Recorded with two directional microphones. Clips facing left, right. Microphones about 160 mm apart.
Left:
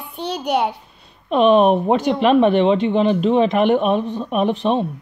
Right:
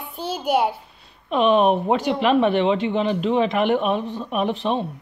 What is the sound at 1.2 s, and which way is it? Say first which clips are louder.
Speech: left 4 dB; 20° left (ahead or behind).